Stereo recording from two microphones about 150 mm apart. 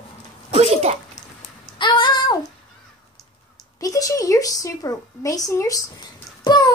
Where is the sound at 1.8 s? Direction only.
30° left (ahead or behind).